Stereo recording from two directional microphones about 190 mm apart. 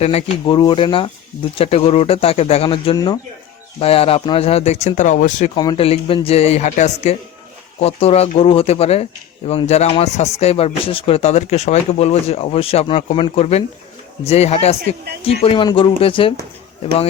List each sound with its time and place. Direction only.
0.0 s speech: 35° left (ahead or behind)
5.5 s speech: 25° left (ahead or behind)